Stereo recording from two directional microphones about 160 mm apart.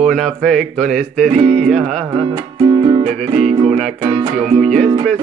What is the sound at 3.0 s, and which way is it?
Music, 45° right (ahead or behind).